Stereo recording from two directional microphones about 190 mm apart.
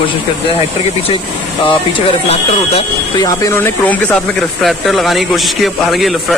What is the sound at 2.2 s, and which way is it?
Speech, 30° left (ahead or behind).